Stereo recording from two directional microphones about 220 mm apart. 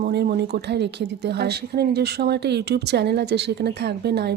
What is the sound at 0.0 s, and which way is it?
Speech, 45° right (ahead or behind).